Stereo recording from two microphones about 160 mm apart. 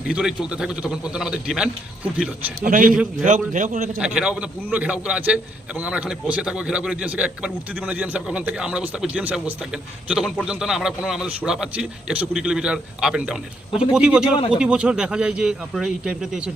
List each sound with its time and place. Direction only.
0.1 s a man's voice: 5° right (ahead or behind)
2.6 s a man's voice: 60° right (ahead or behind)
2.9 s a man's voice: 5° right (ahead or behind)
3.2 s a man's voice: 50° right (ahead or behind)
4.0 s a man's voice: 5° right (ahead or behind)
14.3 s speech: 35° left (ahead or behind)
14.6 s a man's voice: 5° right (ahead or behind)